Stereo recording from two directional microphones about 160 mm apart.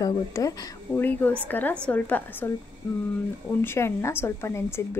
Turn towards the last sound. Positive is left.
turn(degrees=15)  # may be behind; listen again after turning